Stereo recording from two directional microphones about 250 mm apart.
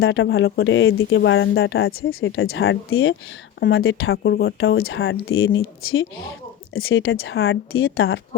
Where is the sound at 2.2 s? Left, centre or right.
Left.